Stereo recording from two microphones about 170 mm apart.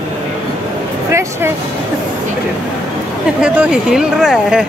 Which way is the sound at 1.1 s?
15° right (ahead or behind).